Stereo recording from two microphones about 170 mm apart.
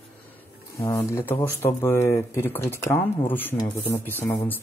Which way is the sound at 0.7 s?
15° left (ahead or behind).